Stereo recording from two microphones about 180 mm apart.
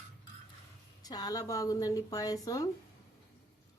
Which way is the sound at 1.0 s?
20° left (ahead or behind).